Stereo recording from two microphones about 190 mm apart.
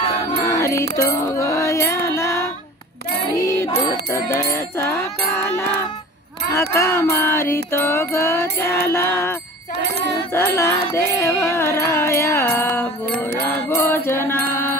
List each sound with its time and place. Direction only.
0.5 s music: 15° left (ahead or behind)